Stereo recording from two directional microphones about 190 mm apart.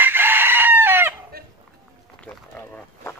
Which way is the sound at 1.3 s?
55° right (ahead or behind).